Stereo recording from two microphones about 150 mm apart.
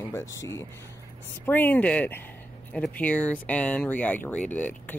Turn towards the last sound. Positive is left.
turn(degrees=10)  # may be behind; listen again after turning